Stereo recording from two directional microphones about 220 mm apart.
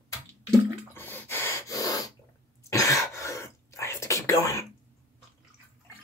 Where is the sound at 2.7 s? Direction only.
15° left (ahead or behind).